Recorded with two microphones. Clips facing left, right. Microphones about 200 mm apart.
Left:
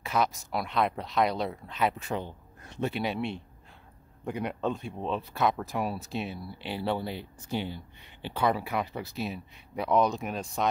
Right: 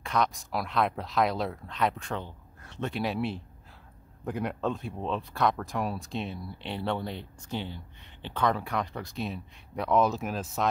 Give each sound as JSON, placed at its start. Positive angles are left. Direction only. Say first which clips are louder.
{"t": 0.0, "sound": "speech", "louder": "even", "side_deg": 5}
{"t": 2.2, "sound": "a sound", "louder": "left 3 dB", "side_deg": 15}
{"t": 2.9, "sound": "speech", "louder": "right 4 dB", "side_deg": 0}